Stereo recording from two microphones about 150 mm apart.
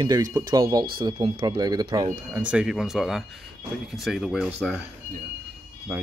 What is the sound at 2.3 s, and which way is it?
Speech, 5° right (ahead or behind).